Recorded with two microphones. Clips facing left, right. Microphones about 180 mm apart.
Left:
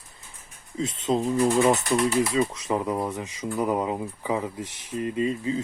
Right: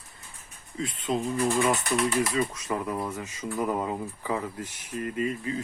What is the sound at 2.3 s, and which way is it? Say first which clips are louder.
Speech: left 4 dB; 25° left (ahead or behind).